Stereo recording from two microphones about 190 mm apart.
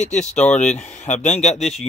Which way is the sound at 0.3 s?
35° left (ahead or behind).